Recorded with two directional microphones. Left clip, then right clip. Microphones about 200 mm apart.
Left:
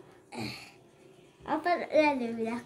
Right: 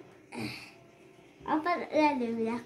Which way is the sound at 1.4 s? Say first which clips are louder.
Left 1 dB; 20° left (ahead or behind).